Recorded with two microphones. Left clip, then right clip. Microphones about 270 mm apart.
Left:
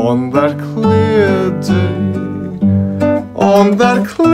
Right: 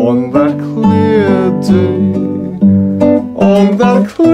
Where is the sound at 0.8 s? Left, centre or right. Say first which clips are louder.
Even; centre.